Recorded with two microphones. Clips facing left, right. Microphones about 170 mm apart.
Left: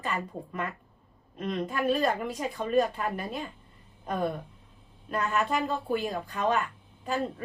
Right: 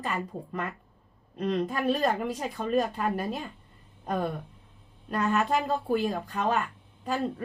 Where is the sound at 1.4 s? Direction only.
40° right (ahead or behind).